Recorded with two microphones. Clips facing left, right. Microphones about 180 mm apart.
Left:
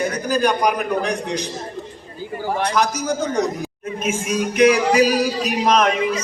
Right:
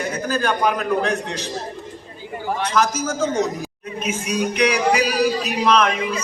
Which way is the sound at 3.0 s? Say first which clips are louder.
Left 1 dB; 15° left (ahead or behind).